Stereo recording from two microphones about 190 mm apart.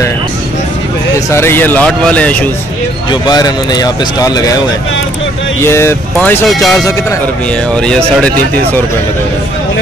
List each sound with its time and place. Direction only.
1.3 s speech: 10° left (ahead or behind)
3.1 s speech: 20° left (ahead or behind)
5.6 s speech: 15° left (ahead or behind)